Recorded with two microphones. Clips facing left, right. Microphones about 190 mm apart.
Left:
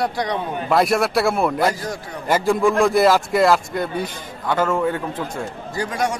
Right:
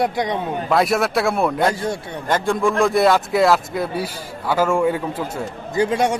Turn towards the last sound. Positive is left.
turn(degrees=-25)  # may be behind; listen again after turning